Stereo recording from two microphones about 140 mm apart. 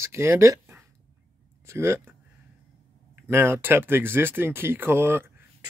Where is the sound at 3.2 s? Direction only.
15° right (ahead or behind).